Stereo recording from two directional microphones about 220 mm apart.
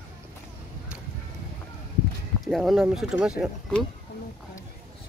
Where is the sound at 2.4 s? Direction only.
Centre (ahead or behind).